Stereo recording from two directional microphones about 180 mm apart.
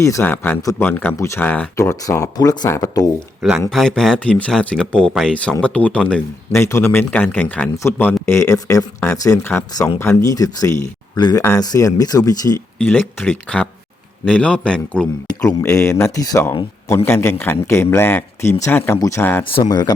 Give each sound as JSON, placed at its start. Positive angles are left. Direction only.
{"t": 0.0, "sound": "speech", "side_deg": 15}
{"t": 3.7, "sound": "speech", "side_deg": 0}
{"t": 15.4, "sound": "speech", "side_deg": 20}
{"t": 19.5, "sound": "speech", "side_deg": 25}